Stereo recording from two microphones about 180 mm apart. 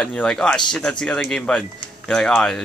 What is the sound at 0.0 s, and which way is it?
Speech, 5° left (ahead or behind).